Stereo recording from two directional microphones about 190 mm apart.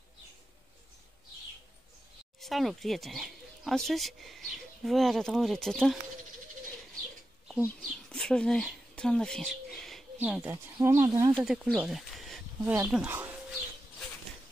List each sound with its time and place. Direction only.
2.4 s speech: centre (ahead or behind)
7.8 s bird: centre (ahead or behind)
10.2 s speech: 10° right (ahead or behind)
11.4 s speech: centre (ahead or behind)